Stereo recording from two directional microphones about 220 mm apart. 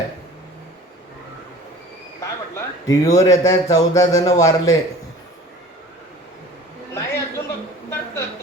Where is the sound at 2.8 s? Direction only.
15° left (ahead or behind).